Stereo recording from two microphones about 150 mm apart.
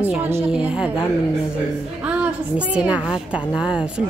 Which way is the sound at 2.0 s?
10° right (ahead or behind).